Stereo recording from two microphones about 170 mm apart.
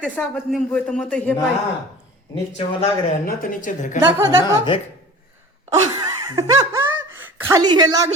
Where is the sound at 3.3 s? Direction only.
50° left (ahead or behind).